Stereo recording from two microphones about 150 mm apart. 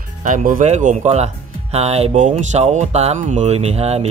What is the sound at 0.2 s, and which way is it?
Speech, 60° right (ahead or behind).